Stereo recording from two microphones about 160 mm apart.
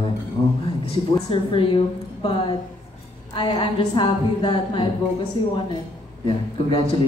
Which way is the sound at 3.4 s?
30° left (ahead or behind).